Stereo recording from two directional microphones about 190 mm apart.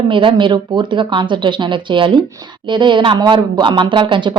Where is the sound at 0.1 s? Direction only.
25° right (ahead or behind).